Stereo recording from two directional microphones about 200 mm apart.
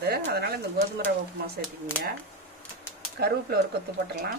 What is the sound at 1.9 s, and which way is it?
Speech, 5° left (ahead or behind).